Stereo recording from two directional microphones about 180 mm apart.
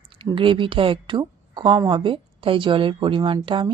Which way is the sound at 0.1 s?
30° right (ahead or behind).